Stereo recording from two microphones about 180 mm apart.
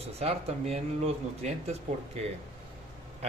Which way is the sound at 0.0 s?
35° right (ahead or behind).